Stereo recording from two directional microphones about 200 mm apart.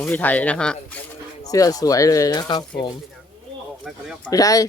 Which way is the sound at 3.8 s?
5° right (ahead or behind).